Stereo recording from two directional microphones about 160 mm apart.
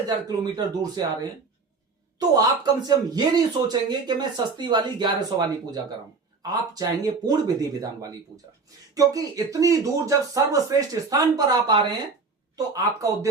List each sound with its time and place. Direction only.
0.1 s speech: 25° right (ahead or behind)
2.3 s speech: 25° right (ahead or behind)